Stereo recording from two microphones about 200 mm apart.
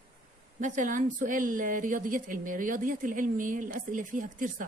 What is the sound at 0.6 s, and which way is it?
A woman's voice, 40° right (ahead or behind).